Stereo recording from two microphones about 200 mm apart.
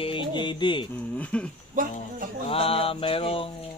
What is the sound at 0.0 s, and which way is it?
Music, 25° left (ahead or behind).